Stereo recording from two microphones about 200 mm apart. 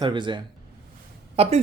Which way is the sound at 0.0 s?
25° right (ahead or behind).